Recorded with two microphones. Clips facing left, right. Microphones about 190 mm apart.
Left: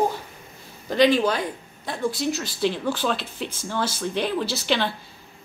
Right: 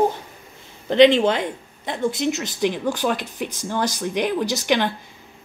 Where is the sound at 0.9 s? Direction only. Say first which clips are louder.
Right 5 dB; 25° right (ahead or behind).